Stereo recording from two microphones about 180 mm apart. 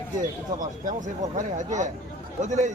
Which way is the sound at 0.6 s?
45° right (ahead or behind).